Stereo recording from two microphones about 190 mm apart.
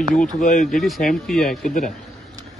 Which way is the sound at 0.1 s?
45° left (ahead or behind).